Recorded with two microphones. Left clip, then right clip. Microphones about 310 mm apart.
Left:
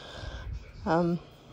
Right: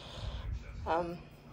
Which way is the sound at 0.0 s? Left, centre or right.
Left.